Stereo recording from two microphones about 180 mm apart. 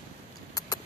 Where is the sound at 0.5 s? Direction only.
20° left (ahead or behind).